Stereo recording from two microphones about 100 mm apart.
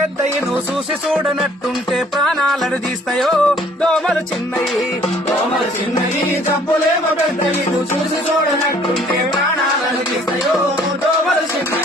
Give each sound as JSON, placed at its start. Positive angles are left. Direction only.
{"t": 1.9, "sound": "music", "side_deg": 0}